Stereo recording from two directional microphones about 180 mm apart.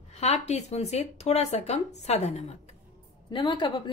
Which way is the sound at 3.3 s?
25° left (ahead or behind).